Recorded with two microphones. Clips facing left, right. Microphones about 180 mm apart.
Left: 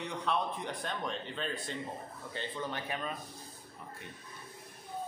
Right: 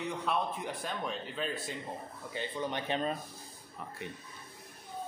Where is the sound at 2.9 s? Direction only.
30° right (ahead or behind).